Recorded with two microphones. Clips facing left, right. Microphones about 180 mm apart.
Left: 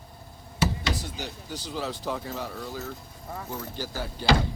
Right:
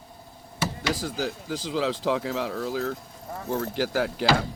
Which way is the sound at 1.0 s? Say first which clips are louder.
Right 7 dB; 90° right.